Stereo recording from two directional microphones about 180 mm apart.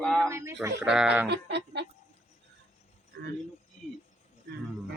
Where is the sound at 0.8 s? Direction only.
5° right (ahead or behind).